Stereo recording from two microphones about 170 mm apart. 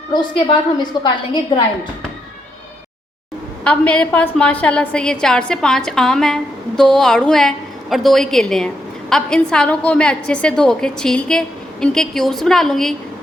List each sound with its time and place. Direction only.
0.1 s a woman's voice: 25° left (ahead or behind)
3.6 s a woman's voice: 5° left (ahead or behind)